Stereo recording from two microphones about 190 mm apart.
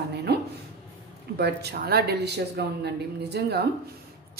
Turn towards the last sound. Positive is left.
turn(degrees=-60)  # may be behind; listen again after turning